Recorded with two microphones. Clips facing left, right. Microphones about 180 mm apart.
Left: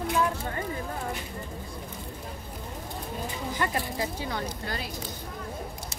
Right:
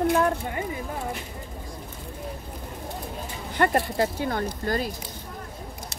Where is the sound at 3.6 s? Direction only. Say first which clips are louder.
Right 9 dB; 60° right (ahead or behind); by 4.9 s 45° right (ahead or behind).